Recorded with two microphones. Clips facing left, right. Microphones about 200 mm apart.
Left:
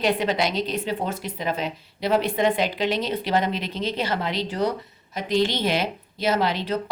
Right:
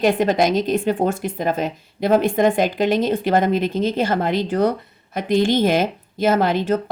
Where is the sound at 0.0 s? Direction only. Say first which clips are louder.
Right 6 dB; 45° right (ahead or behind).